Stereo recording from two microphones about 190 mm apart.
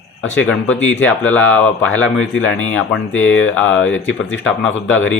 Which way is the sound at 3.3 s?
90° left.